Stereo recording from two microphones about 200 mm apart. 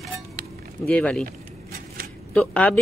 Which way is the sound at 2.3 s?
5° left (ahead or behind).